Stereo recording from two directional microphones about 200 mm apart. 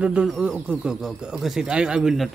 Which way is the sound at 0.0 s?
5° right (ahead or behind).